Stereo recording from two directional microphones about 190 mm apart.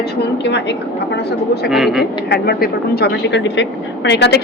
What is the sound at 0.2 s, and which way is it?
Speech, 65° left (ahead or behind).